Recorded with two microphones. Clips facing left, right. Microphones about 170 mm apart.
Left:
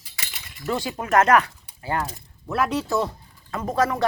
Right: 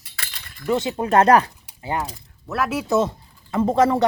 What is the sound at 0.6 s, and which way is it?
Speech, 20° right (ahead or behind).